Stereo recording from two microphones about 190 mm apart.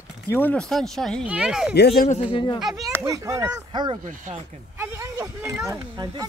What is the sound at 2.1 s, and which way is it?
Speech, 30° left (ahead or behind).